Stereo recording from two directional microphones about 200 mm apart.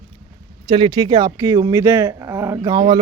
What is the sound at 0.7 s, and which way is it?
Speech, 20° right (ahead or behind).